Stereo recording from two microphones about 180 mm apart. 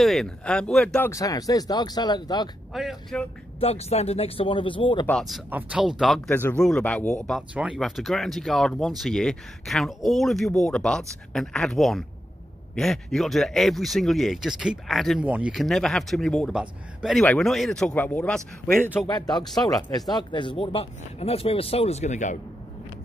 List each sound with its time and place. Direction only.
0.0 s speech: centre (ahead or behind); by 2.5 s 25° left (ahead or behind)
2.7 s speech: centre (ahead or behind)
3.5 s speech: 35° left (ahead or behind)
5.0 s speech: centre (ahead or behind)
19.0 s speech: 20° left (ahead or behind); by 22.4 s 40° left (ahead or behind)